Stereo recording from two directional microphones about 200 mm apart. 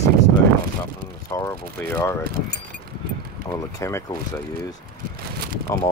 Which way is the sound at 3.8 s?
15° left (ahead or behind).